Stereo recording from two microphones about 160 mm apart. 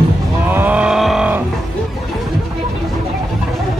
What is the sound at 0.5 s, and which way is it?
Vehicle, 10° right (ahead or behind).